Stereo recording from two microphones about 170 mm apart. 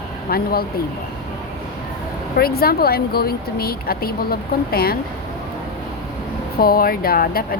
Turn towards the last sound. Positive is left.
turn(degrees=60)  # may be behind; listen again after turning